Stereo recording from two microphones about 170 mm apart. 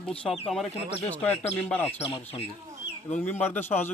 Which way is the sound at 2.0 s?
30° left (ahead or behind).